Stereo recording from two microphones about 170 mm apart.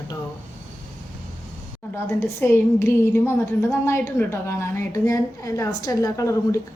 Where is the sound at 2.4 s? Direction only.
15° left (ahead or behind).